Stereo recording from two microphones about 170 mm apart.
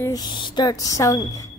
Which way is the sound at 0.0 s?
25° left (ahead or behind).